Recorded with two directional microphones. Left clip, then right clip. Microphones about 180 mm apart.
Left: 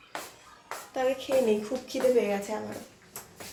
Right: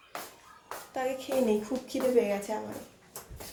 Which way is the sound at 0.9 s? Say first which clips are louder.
Left 5 dB; centre (ahead or behind).